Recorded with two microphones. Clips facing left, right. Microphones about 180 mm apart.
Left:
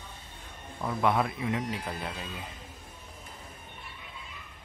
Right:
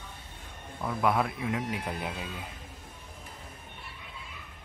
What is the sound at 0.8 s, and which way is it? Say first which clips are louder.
Speech: even; centre (ahead or behind).